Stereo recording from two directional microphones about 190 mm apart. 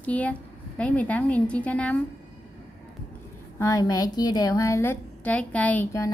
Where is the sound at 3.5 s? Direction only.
15° left (ahead or behind).